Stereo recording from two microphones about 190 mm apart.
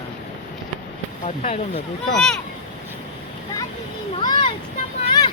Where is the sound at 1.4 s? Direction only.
35° left (ahead or behind).